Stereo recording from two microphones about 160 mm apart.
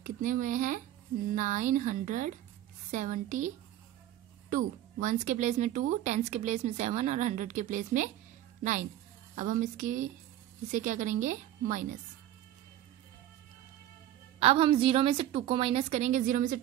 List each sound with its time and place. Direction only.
0.0 s speech: 55° right (ahead or behind)
9.3 s a woman's voice: 55° right (ahead or behind)
14.4 s a woman's voice: 35° right (ahead or behind); by 16.6 s 55° right (ahead or behind)